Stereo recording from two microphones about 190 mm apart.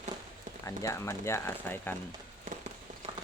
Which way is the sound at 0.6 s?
15° left (ahead or behind).